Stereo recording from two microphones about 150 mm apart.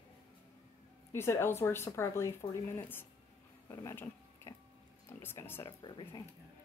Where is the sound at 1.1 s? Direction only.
15° left (ahead or behind).